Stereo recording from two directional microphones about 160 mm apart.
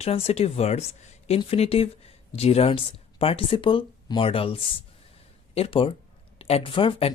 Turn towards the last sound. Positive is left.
turn(degrees=35)  # may be behind; listen again after turning